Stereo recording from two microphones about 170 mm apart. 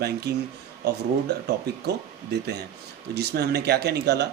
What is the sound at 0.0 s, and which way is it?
Speech, 70° right (ahead or behind).